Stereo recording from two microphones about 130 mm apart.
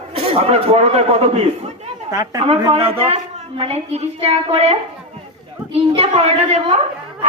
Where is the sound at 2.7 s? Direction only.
45° right (ahead or behind).